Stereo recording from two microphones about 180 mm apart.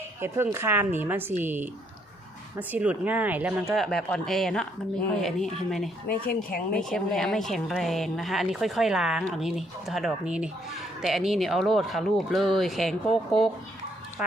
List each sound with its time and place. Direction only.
0.2 s a woman's voice: 15° right (ahead or behind)
6.1 s speech: 55° left (ahead or behind)
6.7 s a woman's voice: 5° left (ahead or behind)